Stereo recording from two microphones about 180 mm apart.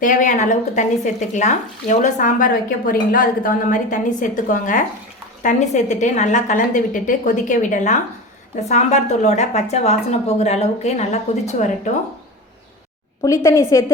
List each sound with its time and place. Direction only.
0.0 s a woman's voice: 45° left (ahead or behind)
13.2 s a woman's voice: 20° left (ahead or behind)